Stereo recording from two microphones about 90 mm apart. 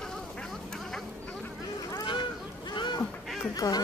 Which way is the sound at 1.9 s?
60° left (ahead or behind).